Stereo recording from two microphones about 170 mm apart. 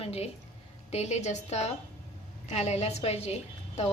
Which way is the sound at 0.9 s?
40° left (ahead or behind).